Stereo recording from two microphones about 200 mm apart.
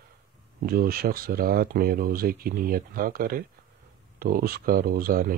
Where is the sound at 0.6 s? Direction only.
45° right (ahead or behind).